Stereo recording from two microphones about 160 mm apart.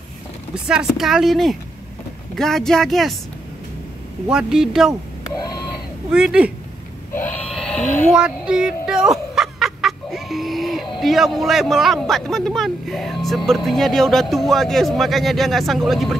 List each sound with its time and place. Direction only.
0.7 s speech: 5° right (ahead or behind)
4.3 s speech: 5° right (ahead or behind)
6.1 s speech: 5° right (ahead or behind)
7.2 s a sound: 10° left (ahead or behind)
7.8 s speech: 50° left (ahead or behind)
8.1 s a sound: 5° right (ahead or behind)
13.5 s speech: centre (ahead or behind)